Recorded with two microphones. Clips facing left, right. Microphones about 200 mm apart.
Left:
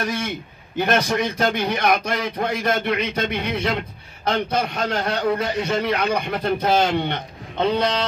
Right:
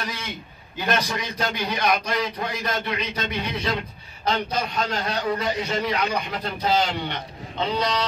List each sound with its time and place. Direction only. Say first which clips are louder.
0.0 s a man's voice: left 8 dB; 50° left (ahead or behind)